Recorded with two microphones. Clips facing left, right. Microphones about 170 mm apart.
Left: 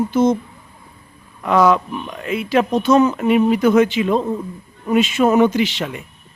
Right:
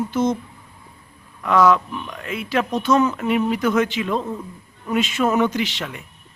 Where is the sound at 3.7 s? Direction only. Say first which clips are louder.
Left 6 dB; 10° left (ahead or behind).